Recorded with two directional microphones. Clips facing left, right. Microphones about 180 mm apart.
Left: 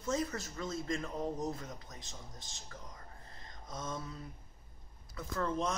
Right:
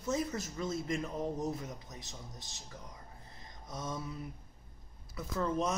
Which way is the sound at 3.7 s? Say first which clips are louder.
Right 2 dB; 15° right (ahead or behind).